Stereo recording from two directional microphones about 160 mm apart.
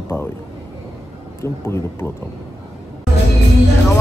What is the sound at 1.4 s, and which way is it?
Speech, 15° left (ahead or behind).